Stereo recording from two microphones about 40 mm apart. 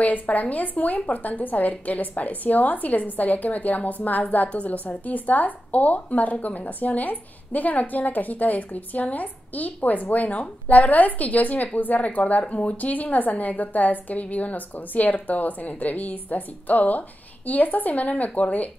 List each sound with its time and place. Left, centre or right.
0.0 s a woman's voice: left